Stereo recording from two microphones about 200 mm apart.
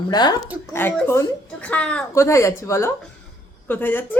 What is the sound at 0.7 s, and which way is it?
Speech, 10° left (ahead or behind).